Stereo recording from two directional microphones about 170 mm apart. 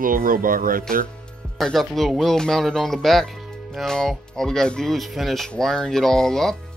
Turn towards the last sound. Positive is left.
turn(degrees=5)  # may be behind; listen again after turning